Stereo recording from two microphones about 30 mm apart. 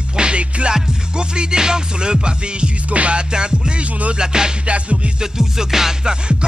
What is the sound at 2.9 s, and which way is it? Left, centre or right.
Music, right.